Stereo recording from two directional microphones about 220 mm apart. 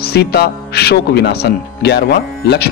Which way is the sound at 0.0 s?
45° left (ahead or behind).